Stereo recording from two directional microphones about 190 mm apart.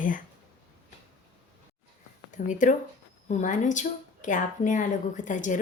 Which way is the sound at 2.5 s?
40° left (ahead or behind).